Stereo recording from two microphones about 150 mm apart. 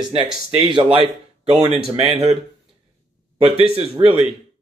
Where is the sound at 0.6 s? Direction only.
30° right (ahead or behind).